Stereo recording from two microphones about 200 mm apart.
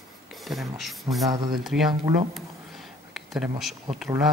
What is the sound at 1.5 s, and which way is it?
Speech, centre (ahead or behind).